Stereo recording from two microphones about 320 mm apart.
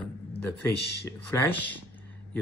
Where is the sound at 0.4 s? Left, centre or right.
Centre.